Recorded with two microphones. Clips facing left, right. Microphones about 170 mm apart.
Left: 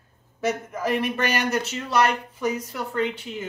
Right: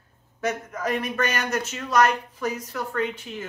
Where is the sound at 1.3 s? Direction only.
10° left (ahead or behind).